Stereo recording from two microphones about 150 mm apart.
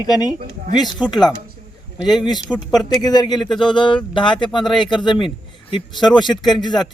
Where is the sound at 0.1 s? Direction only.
25° left (ahead or behind).